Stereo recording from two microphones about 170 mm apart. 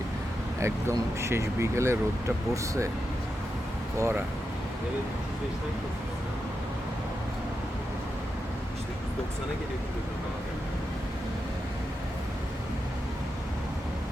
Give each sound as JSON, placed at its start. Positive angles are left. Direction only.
{"t": 0.6, "sound": "speech", "side_deg": -15}
{"t": 3.9, "sound": "speech", "side_deg": -15}